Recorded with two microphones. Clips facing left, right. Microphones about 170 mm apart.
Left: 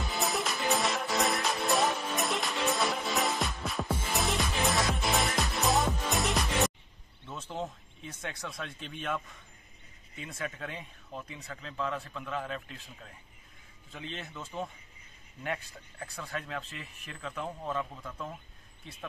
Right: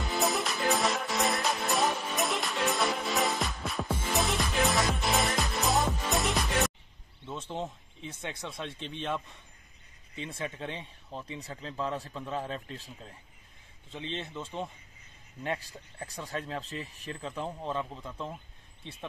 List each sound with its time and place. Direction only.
0.0 s music: centre (ahead or behind)
7.2 s a sound: 15° right (ahead or behind)
8.1 s a man's voice: 15° right (ahead or behind); by 13.1 s 35° right (ahead or behind)
13.9 s a man's voice: 25° right (ahead or behind)